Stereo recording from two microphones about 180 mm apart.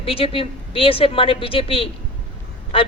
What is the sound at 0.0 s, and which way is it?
A man's voice, 30° left (ahead or behind).